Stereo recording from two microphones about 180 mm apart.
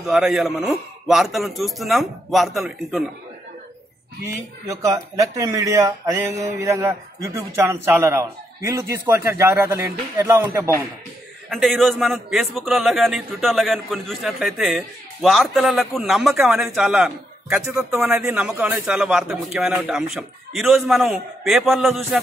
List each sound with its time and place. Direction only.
0.0 s a man's voice: centre (ahead or behind)
4.6 s speech: 20° right (ahead or behind)
11.4 s a man's voice: centre (ahead or behind)